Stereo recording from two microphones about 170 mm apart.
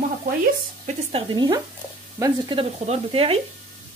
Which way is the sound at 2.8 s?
35° right (ahead or behind).